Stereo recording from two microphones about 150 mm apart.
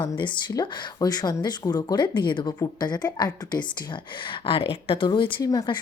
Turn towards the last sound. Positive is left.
turn(degrees=30)  # may be behind; listen again after turning